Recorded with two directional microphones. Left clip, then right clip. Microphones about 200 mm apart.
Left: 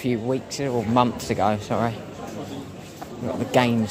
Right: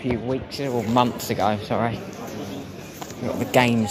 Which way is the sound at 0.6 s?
20° left (ahead or behind).